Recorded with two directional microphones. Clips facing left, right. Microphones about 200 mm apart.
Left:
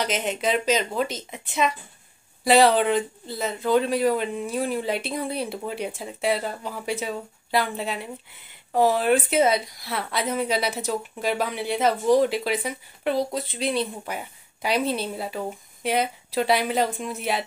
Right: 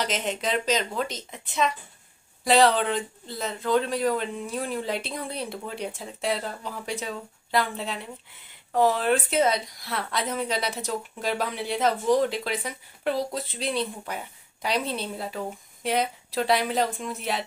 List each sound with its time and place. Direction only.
0.0 s a woman's voice: 5° left (ahead or behind)